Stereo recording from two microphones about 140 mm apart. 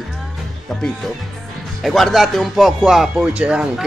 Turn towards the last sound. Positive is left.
turn(degrees=-5)  # may be behind; listen again after turning